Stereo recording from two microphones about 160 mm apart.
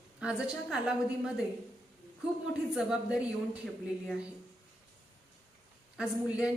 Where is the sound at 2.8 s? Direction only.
5° right (ahead or behind).